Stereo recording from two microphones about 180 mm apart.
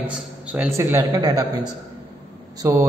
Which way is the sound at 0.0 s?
5° right (ahead or behind).